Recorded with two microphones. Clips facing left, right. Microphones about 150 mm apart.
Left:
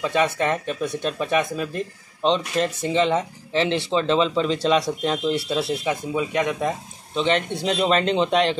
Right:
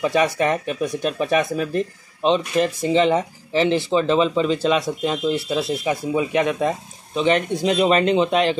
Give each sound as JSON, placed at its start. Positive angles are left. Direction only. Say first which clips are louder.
{"t": 0.0, "sound": "speech", "louder": "right 3 dB", "side_deg": -15}
{"t": 1.4, "sound": "speech", "louder": "right 4 dB", "side_deg": 20}
{"t": 2.2, "sound": "speech", "louder": "right 3 dB", "side_deg": -10}
{"t": 5.9, "sound": "speech", "louder": "right 3 dB", "side_deg": -15}